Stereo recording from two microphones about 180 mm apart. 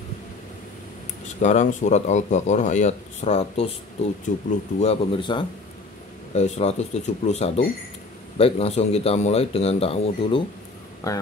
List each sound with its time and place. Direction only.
1.4 s a man's voice: 40° left (ahead or behind)
11.0 s speech: 20° left (ahead or behind)